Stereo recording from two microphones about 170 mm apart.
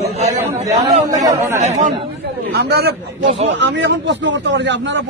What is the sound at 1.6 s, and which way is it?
Speech, 45° right (ahead or behind).